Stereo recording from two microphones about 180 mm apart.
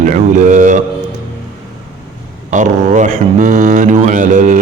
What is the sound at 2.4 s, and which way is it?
Mantra, 40° right (ahead or behind).